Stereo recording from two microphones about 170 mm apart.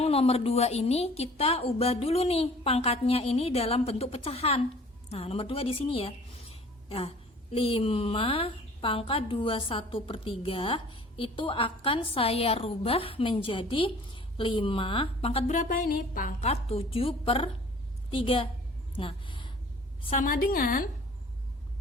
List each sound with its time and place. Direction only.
0.0 s a woman's voice: 35° left (ahead or behind); by 16.5 s 55° left (ahead or behind)
16.5 s a woman's voice: 35° left (ahead or behind)
18.9 s a sound: 30° left (ahead or behind)
20.0 s a woman's voice: 35° left (ahead or behind)
20.2 s a woman's voice: 55° left (ahead or behind)